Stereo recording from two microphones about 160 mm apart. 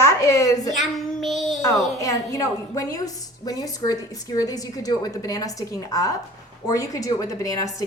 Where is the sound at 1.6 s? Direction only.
20° left (ahead or behind).